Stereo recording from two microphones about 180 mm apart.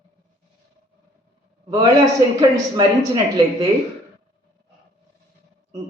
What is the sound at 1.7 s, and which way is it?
A man's voice, 20° right (ahead or behind).